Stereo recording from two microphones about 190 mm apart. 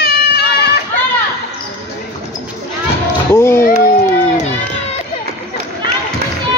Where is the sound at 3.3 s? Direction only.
15° left (ahead or behind).